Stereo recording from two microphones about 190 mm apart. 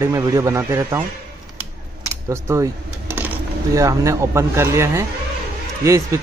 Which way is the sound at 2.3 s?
15° right (ahead or behind).